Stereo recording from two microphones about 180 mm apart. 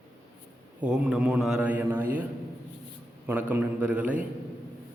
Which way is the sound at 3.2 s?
10° right (ahead or behind).